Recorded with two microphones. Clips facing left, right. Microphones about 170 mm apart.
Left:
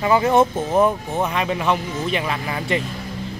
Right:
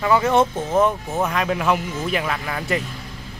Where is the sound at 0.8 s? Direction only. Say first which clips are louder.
Left 1 dB; centre (ahead or behind).